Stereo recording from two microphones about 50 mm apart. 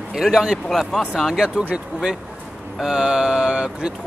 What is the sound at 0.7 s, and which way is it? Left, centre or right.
Speech, centre.